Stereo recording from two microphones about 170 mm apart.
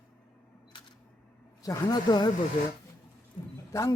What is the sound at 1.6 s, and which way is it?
Speech, 20° left (ahead or behind).